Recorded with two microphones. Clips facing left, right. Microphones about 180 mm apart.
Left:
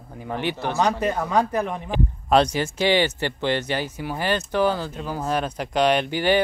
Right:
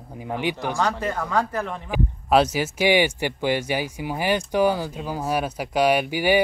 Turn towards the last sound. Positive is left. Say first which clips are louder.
# even
turn(degrees=-10)  # may be behind; listen again after turning